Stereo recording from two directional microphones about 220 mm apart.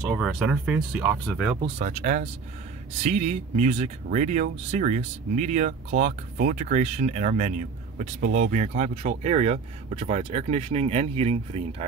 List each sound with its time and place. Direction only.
0.1 s speech: centre (ahead or behind)
1.6 s speech: 30° right (ahead or behind)